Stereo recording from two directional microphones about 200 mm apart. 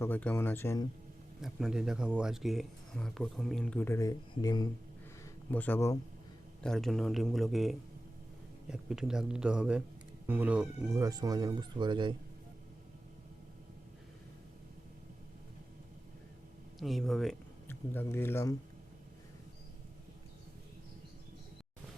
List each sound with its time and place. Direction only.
0.0 s speech: 10° left (ahead or behind)
1.4 s speech: centre (ahead or behind); by 4.7 s 20° left (ahead or behind)
5.2 s a sound: 10° left (ahead or behind)
6.6 s speech: centre (ahead or behind); by 12.1 s 25° right (ahead or behind)
16.8 s speech: centre (ahead or behind)